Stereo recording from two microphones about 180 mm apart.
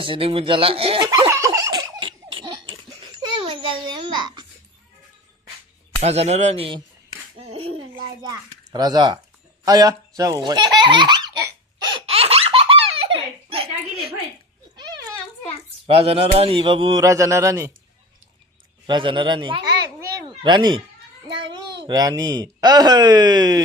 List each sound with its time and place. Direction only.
0.0 s speech: 30° right (ahead or behind)
1.3 s a sound: 15° right (ahead or behind)
6.0 s speech: 35° right (ahead or behind)
8.2 s speech: 20° right (ahead or behind)
11.9 s belly laugh: 30° right (ahead or behind)
15.9 s speech: 35° right (ahead or behind)
18.9 s speech: 25° right (ahead or behind)
19.8 s a sound: 20° right (ahead or behind)
21.8 s speech: 20° right (ahead or behind)